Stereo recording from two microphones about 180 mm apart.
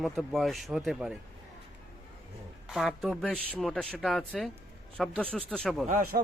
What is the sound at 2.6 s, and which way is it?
Speech, centre (ahead or behind).